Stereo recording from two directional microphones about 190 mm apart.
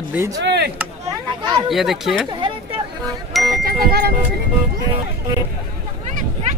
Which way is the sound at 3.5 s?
50° right (ahead or behind).